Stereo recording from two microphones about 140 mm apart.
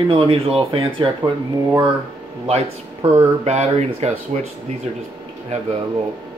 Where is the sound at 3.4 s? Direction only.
55° right (ahead or behind).